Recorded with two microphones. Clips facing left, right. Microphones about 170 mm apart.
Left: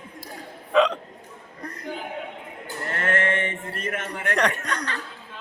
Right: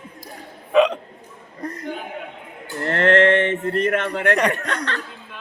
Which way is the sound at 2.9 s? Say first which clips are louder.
Right 10 dB; 65° right (ahead or behind).